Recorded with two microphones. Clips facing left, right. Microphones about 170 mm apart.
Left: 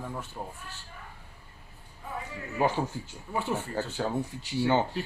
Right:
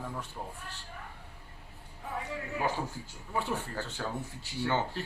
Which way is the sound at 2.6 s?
20° left (ahead or behind).